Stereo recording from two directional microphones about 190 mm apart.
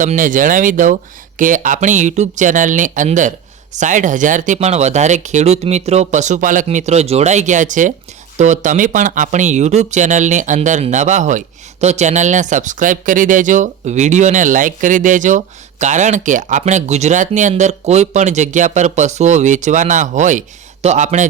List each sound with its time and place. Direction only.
0.0 s speech: 45° right (ahead or behind)